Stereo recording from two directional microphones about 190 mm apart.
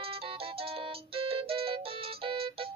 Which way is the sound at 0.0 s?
30° right (ahead or behind).